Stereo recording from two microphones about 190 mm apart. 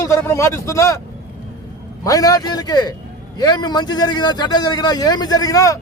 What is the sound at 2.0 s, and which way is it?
A man's voice, 20° left (ahead or behind).